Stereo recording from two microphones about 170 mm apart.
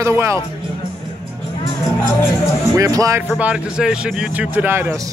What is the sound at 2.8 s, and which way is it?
Speech, 20° right (ahead or behind).